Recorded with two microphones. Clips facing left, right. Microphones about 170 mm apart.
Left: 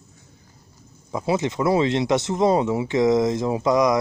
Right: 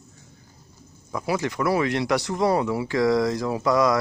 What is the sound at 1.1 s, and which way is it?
Speech, 25° left (ahead or behind).